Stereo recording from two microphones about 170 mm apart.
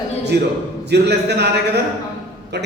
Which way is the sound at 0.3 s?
85° right.